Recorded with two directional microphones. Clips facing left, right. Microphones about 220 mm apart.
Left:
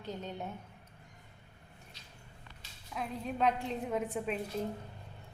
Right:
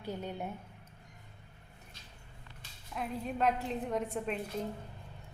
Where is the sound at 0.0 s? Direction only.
10° right (ahead or behind).